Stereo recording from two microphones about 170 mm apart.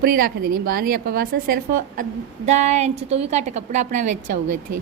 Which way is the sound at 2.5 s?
45° right (ahead or behind).